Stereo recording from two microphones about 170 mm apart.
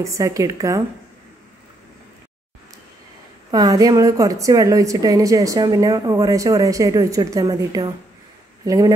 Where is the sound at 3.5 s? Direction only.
20° right (ahead or behind).